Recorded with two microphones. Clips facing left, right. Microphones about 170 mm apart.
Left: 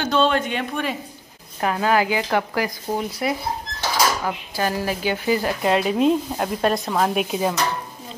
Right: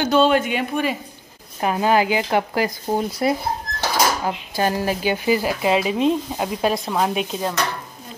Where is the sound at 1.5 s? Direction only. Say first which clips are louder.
Right 2 dB; 20° right (ahead or behind).